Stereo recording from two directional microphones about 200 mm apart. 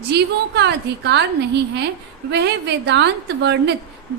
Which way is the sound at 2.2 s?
55° right (ahead or behind).